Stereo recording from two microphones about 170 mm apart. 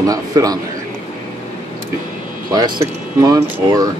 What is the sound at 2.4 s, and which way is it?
Speech, 25° right (ahead or behind).